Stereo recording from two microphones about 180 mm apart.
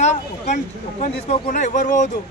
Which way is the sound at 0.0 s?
40° left (ahead or behind).